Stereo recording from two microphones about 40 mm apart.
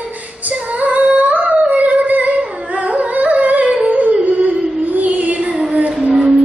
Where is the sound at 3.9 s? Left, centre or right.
Right.